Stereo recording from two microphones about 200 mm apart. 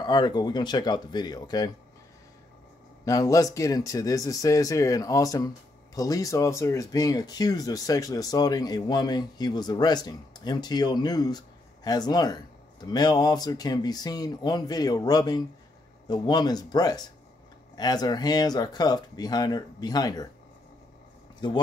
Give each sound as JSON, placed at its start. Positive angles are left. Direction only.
{"t": 0.0, "sound": "speech", "side_deg": 20}
{"t": 3.1, "sound": "speech", "side_deg": 15}
{"t": 21.4, "sound": "speech", "side_deg": 20}